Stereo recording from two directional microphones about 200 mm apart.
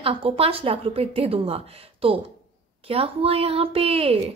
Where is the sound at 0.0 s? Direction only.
30° right (ahead or behind).